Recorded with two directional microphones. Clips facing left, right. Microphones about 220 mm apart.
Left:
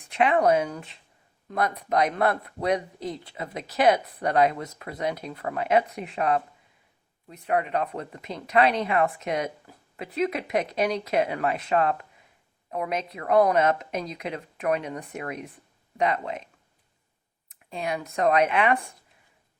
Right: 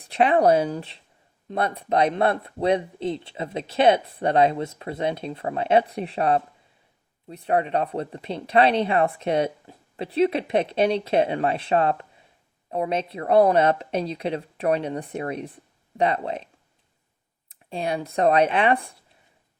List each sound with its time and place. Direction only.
0.0 s speech: 35° right (ahead or behind)
17.5 s speech: 30° right (ahead or behind)